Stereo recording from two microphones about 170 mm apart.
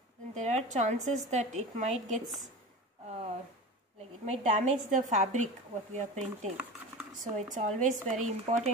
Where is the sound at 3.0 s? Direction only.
40° right (ahead or behind).